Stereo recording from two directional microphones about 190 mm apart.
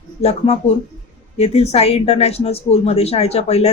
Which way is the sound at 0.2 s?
30° left (ahead or behind).